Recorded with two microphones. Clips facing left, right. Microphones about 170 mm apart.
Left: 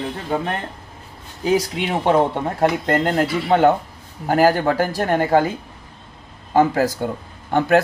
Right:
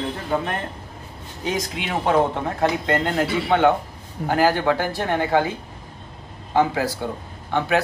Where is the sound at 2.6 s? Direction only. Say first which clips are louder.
Left 3 dB; 40° left (ahead or behind).